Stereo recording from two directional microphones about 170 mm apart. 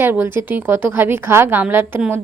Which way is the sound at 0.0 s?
10° right (ahead or behind).